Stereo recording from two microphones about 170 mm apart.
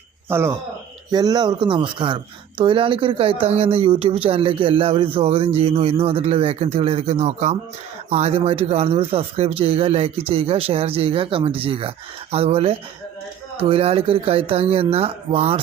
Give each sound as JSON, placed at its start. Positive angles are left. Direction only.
{"t": 0.3, "sound": "speech", "side_deg": -15}